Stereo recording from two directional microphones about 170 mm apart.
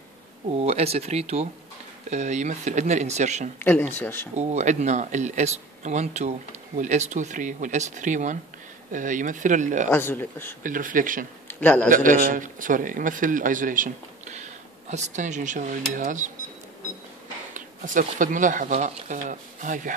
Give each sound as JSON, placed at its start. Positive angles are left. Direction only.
{"t": 0.5, "sound": "a man's voice", "side_deg": -40}
{"t": 3.6, "sound": "speech", "side_deg": 10}
{"t": 4.4, "sound": "a man's voice", "side_deg": -40}
{"t": 9.8, "sound": "speech", "side_deg": 15}
{"t": 10.6, "sound": "a man's voice", "side_deg": -50}
{"t": 11.4, "sound": "a man's voice", "side_deg": 10}
{"t": 11.9, "sound": "a man's voice", "side_deg": -50}
{"t": 17.6, "sound": "a man's voice", "side_deg": -50}